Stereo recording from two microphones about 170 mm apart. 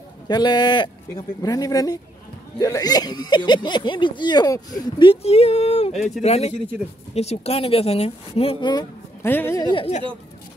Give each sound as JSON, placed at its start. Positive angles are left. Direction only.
{"t": 0.3, "sound": "speech", "side_deg": 25}
{"t": 5.9, "sound": "speech", "side_deg": 0}
{"t": 6.2, "sound": "speech", "side_deg": 40}
{"t": 9.2, "sound": "speech", "side_deg": 10}
{"t": 9.6, "sound": "speech", "side_deg": 25}